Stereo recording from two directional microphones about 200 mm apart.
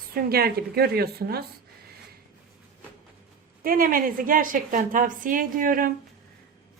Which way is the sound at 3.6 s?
45° right (ahead or behind).